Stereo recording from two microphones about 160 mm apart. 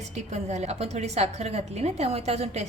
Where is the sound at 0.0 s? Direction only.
45° right (ahead or behind).